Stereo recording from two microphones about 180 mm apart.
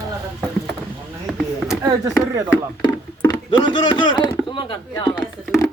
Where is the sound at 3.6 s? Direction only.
25° left (ahead or behind).